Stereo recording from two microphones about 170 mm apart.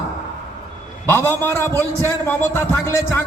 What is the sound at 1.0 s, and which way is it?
A man's voice, 15° left (ahead or behind).